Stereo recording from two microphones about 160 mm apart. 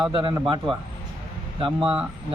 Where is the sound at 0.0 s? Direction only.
30° right (ahead or behind).